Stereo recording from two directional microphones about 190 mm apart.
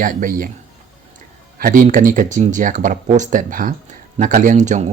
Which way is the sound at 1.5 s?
45° right (ahead or behind).